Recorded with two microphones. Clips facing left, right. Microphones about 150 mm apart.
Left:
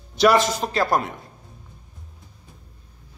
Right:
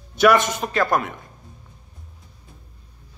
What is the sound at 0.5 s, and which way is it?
Speech, 35° left (ahead or behind).